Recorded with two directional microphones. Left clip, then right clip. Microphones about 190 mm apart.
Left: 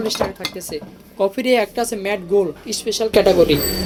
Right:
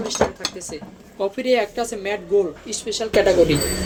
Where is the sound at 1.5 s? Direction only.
45° left (ahead or behind).